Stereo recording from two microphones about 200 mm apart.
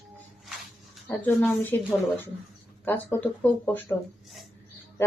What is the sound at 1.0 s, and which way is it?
Speech, 10° left (ahead or behind).